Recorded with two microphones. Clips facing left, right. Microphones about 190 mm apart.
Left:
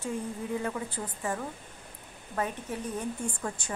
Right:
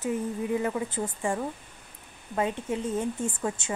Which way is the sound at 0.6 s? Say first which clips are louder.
Right 5 dB; 25° right (ahead or behind).